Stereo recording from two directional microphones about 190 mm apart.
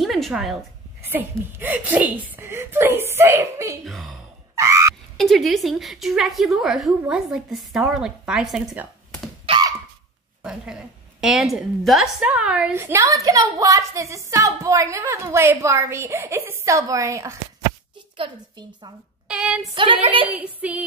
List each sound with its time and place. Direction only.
0.0 s a sound: centre (ahead or behind)
1.0 s a woman's voice: 10° right (ahead or behind)
3.8 s a woman's voice: centre (ahead or behind)
4.6 s frog: 15° right (ahead or behind)
5.1 s a woman's voice: centre (ahead or behind)
9.5 s a sound: 20° right (ahead or behind)
10.4 s a woman's voice: 5° right (ahead or behind); by 18.9 s 25° right (ahead or behind)
19.2 s speech: 5° right (ahead or behind)
19.7 s a woman's voice: 25° right (ahead or behind)
20.2 s a woman's voice: 10° right (ahead or behind)